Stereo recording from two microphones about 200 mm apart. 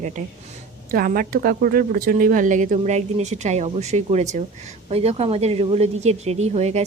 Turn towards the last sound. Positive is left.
turn(degrees=-35)  # may be behind; listen again after turning